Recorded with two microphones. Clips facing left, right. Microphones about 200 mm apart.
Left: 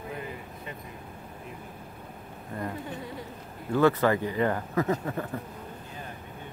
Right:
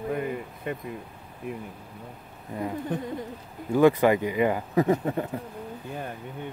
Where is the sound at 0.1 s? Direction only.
55° right (ahead or behind).